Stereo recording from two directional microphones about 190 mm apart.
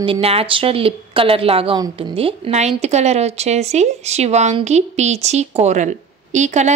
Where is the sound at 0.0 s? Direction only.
30° right (ahead or behind).